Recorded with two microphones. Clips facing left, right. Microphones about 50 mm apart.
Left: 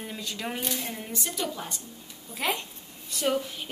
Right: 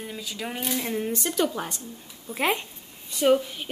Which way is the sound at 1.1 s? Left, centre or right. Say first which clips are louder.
Right 4 dB; right.